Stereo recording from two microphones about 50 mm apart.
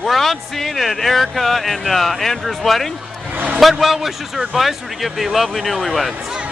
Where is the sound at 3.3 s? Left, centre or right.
Right.